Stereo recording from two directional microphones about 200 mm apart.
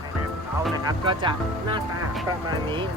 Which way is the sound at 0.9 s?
25° right (ahead or behind).